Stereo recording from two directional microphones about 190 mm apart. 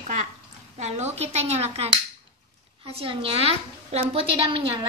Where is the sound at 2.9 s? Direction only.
30° right (ahead or behind).